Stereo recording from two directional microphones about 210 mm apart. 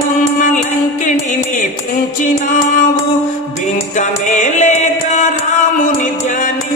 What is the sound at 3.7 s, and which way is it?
Music, 35° left (ahead or behind).